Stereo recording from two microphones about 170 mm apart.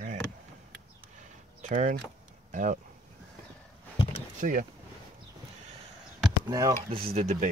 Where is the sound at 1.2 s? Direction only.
45° right (ahead or behind).